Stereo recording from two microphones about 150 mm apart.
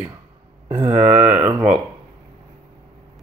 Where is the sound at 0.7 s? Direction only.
15° right (ahead or behind).